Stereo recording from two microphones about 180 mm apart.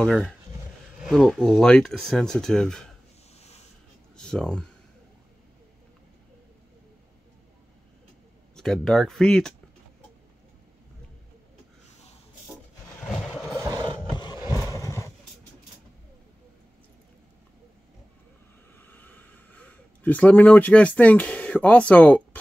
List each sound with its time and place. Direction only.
0.0 s speech: 5° left (ahead or behind)
4.2 s speech: 5° left (ahead or behind)
8.5 s speech: centre (ahead or behind)
13.6 s mechanisms: 20° right (ahead or behind)
14.1 s roar: 25° left (ahead or behind)
14.6 s horse: 15° left (ahead or behind)
18.8 s a sound: 10° left (ahead or behind)